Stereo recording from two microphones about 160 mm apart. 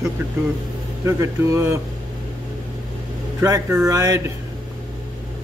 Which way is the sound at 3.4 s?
20° right (ahead or behind).